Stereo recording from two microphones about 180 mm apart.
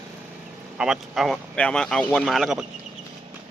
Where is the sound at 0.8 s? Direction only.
Centre (ahead or behind).